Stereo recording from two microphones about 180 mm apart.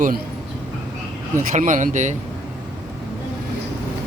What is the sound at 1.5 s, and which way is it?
Speech, 45° right (ahead or behind).